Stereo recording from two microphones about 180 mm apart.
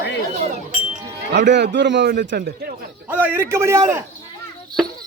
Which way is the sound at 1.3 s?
70° right (ahead or behind).